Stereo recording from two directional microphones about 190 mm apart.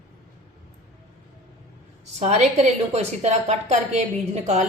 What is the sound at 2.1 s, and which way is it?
A woman's voice, 35° right (ahead or behind).